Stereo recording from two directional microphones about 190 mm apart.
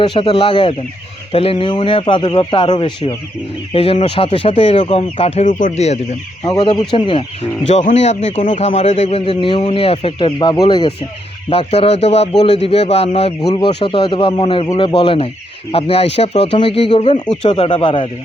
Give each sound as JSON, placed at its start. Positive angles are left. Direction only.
{"t": 0.0, "sound": "speech", "side_deg": 25}
{"t": 6.4, "sound": "speech", "side_deg": 20}
{"t": 7.7, "sound": "speech", "side_deg": 40}